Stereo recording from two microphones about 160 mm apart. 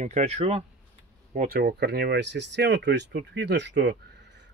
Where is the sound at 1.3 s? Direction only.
65° right (ahead or behind).